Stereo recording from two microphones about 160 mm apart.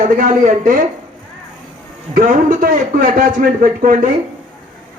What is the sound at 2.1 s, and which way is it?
A man's voice, 55° right (ahead or behind).